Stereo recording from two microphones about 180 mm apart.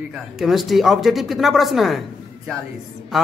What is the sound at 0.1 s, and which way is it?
Speech, centre (ahead or behind).